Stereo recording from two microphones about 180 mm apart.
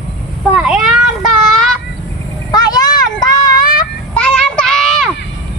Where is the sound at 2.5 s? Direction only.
20° left (ahead or behind).